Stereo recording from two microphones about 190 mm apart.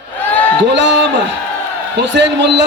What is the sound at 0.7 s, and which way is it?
A man's voice, 70° right (ahead or behind).